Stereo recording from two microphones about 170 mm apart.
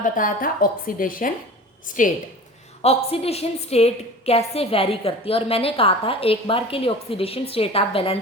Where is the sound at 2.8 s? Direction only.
35° left (ahead or behind).